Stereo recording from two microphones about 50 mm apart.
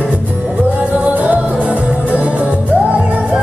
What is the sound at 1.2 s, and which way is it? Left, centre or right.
Music, right.